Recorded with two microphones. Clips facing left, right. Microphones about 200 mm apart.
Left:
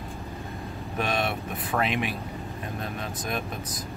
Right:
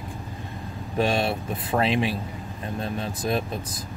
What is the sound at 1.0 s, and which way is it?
Speech, 30° right (ahead or behind).